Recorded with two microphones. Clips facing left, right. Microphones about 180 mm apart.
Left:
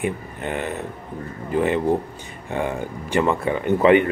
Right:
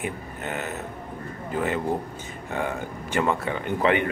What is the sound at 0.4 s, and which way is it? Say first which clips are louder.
Speech: left 4 dB; 5° right (ahead or behind).